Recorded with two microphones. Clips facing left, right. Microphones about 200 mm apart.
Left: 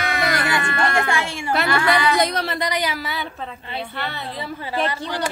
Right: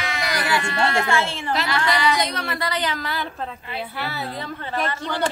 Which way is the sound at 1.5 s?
55° left (ahead or behind).